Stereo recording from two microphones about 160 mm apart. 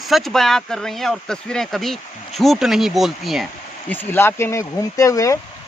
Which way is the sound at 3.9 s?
10° left (ahead or behind).